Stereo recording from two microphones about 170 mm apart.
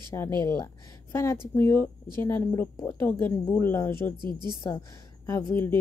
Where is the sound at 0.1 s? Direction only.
15° left (ahead or behind).